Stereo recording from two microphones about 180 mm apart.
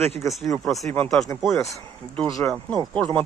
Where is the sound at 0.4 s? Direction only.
Centre (ahead or behind).